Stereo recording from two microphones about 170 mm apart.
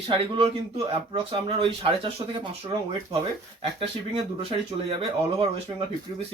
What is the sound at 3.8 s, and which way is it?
Speech, 35° right (ahead or behind).